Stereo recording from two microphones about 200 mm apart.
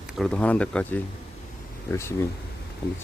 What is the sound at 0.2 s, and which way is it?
Speech, 5° left (ahead or behind).